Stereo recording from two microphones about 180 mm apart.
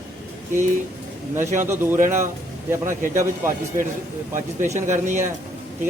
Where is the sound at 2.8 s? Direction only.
45° right (ahead or behind).